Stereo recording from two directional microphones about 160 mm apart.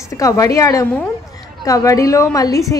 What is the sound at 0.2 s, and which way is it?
A woman's voice, 20° left (ahead or behind).